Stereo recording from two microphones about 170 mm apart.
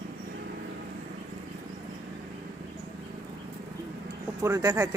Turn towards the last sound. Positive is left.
turn(degrees=-20)  # may be behind; listen again after turning